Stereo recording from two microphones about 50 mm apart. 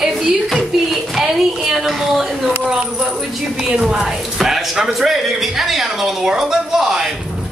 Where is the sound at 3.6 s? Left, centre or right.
Centre.